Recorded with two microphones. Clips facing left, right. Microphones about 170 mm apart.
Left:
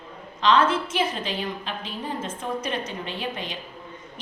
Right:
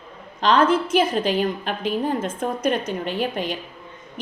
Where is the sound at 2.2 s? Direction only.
60° right (ahead or behind).